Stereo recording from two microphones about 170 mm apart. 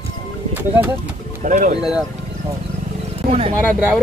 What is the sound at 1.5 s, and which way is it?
Speech, 50° right (ahead or behind).